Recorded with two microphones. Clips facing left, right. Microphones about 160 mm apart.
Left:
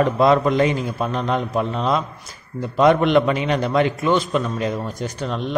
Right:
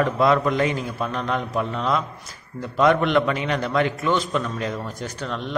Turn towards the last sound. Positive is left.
turn(degrees=20)  # may be behind; listen again after turning